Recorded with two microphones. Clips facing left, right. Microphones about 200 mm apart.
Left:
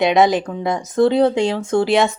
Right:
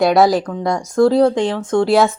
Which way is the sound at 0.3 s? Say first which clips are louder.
Right 2 dB; 20° left (ahead or behind).